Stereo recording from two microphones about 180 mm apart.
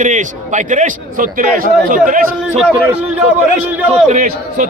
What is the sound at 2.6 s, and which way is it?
Speech, 5° right (ahead or behind).